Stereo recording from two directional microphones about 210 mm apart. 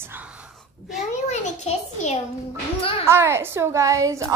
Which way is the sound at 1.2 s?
35° left (ahead or behind).